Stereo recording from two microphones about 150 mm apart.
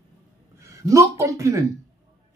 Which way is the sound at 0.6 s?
20° right (ahead or behind).